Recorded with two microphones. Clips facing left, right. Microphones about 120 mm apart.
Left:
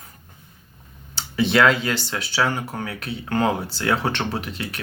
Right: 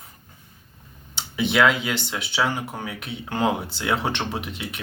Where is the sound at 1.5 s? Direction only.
10° right (ahead or behind).